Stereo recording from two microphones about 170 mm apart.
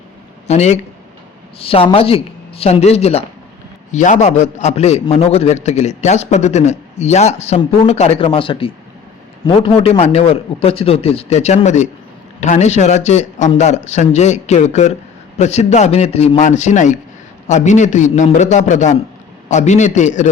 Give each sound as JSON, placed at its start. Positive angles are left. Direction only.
{"t": 0.4, "sound": "a man's voice", "side_deg": 40}